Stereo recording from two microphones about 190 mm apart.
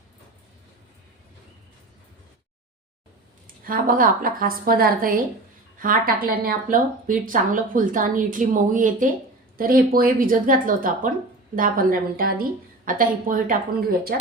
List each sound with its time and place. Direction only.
3.6 s speech: 50° right (ahead or behind)